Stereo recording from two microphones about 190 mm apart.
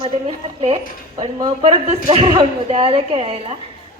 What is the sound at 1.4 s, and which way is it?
A woman's voice, 30° right (ahead or behind).